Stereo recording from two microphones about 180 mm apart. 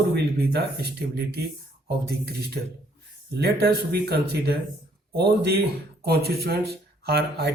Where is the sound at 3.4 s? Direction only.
60° right (ahead or behind).